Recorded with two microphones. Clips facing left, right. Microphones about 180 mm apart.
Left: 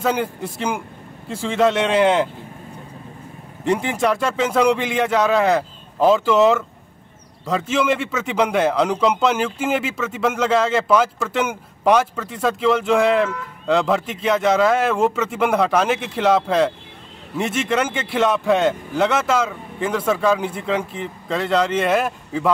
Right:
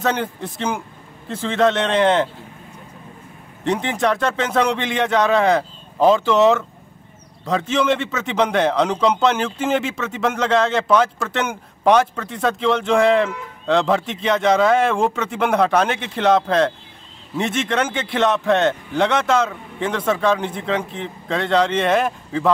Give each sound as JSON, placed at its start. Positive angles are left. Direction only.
{"t": 0.0, "sound": "speech", "side_deg": 10}
{"t": 3.6, "sound": "a man's voice", "side_deg": 5}